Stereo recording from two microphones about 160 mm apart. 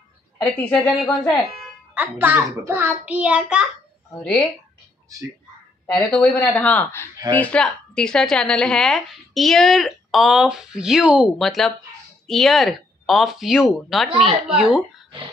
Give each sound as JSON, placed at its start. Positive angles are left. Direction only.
{"t": 0.4, "sound": "a woman's voice", "side_deg": 5}
{"t": 2.0, "sound": "a child's voice", "side_deg": -10}
{"t": 6.0, "sound": "a woman's voice", "side_deg": 10}